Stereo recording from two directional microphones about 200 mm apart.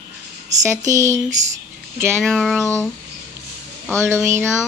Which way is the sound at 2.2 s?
Centre (ahead or behind).